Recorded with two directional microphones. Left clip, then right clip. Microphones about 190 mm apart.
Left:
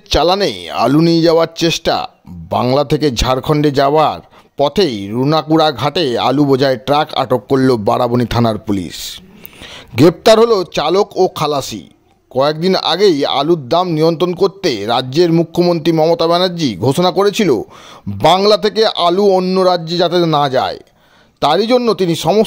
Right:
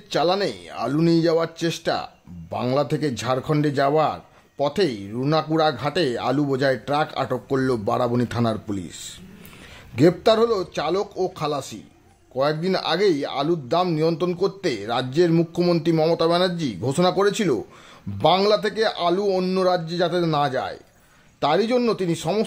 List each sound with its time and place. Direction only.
0.1 s a man's voice: 40° left (ahead or behind)
19.3 s speech: 20° left (ahead or behind)
19.6 s a man's voice: 30° left (ahead or behind)